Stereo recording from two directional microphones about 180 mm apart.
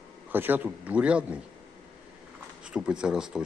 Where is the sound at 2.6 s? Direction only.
5° right (ahead or behind).